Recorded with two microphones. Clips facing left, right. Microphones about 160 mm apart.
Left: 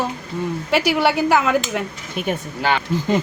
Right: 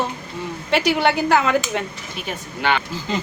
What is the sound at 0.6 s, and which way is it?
Speech, 10° left (ahead or behind).